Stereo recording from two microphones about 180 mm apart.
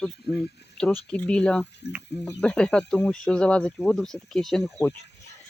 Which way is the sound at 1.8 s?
70° left (ahead or behind).